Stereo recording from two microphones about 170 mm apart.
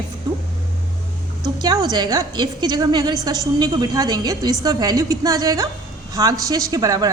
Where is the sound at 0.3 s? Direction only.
25° right (ahead or behind).